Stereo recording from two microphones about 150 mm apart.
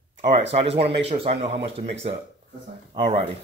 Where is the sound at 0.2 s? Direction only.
45° right (ahead or behind).